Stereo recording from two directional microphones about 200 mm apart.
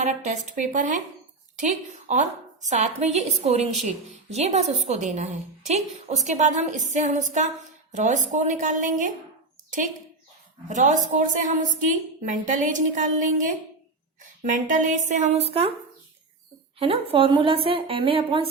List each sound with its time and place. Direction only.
0.0 s a woman's voice: 40° right (ahead or behind)
10.7 s a woman's voice: 40° right (ahead or behind)
16.7 s a woman's voice: 30° right (ahead or behind)